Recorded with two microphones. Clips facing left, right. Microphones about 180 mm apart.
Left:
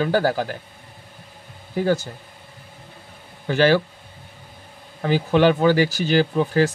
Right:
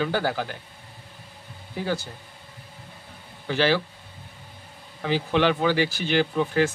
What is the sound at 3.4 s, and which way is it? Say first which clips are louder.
Speech: left 5 dB; 45° left (ahead or behind).